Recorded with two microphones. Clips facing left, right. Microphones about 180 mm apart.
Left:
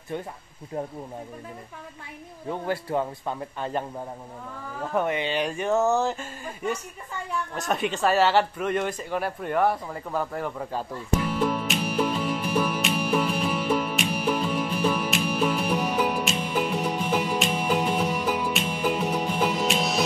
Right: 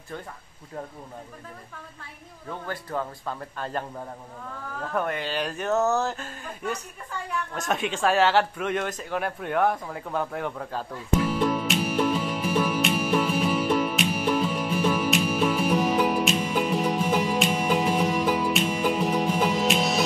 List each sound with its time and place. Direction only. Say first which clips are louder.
2.4 s speech: left 6 dB; 30° left (ahead or behind)
3.3 s speech: left 2 dB; 10° left (ahead or behind)
4.9 s speech: left 3 dB; 15° left (ahead or behind)
11.1 s music: right 2 dB; centre (ahead or behind)